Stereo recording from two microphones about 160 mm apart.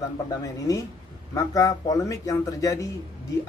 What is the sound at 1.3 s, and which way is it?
Speech, 20° left (ahead or behind).